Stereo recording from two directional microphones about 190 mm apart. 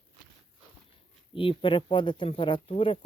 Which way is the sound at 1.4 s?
25° left (ahead or behind).